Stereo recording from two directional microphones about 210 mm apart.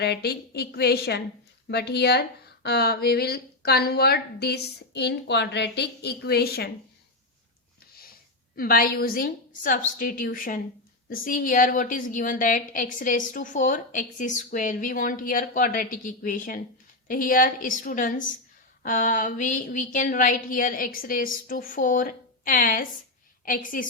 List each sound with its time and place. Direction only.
0.0 s a woman's voice: 50° left (ahead or behind)
8.5 s a woman's voice: 45° left (ahead or behind)